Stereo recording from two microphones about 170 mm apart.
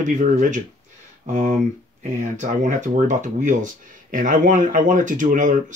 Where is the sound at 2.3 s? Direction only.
45° right (ahead or behind).